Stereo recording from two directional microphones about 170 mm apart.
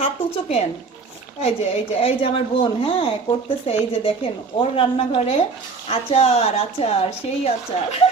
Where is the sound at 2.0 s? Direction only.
35° left (ahead or behind).